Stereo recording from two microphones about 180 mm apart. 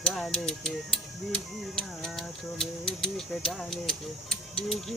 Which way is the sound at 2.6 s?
5° left (ahead or behind).